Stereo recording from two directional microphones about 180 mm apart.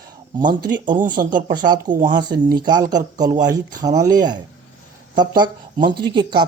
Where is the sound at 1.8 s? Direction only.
45° right (ahead or behind).